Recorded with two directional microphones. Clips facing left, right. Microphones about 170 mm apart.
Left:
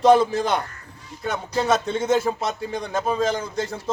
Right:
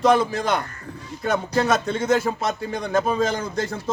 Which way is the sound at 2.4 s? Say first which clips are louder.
Right 1 dB; 25° left (ahead or behind).